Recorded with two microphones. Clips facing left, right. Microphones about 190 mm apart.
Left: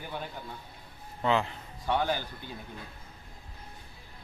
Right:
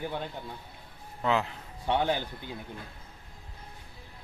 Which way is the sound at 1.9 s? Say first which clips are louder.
Right 2 dB; 20° right (ahead or behind).